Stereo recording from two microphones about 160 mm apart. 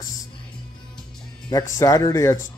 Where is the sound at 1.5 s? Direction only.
20° left (ahead or behind).